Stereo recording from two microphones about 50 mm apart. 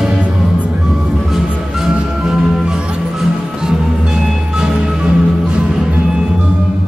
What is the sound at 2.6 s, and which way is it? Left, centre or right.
Music, centre.